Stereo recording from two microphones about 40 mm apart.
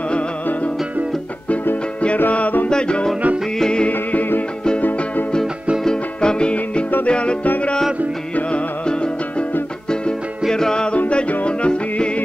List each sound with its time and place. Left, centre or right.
2.7 s music: left
3.8 s music: left
5.9 s music: left
8.5 s music: left
10.5 s music: centre